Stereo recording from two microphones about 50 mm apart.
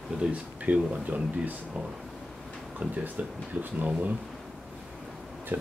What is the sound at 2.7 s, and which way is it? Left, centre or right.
Speech, right.